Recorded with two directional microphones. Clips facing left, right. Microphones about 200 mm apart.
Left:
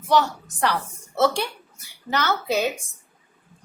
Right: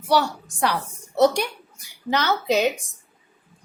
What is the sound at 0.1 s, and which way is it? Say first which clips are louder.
A woman's voice: even; 10° right (ahead or behind).